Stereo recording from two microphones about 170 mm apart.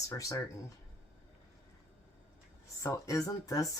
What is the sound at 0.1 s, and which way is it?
Speech, 20° left (ahead or behind).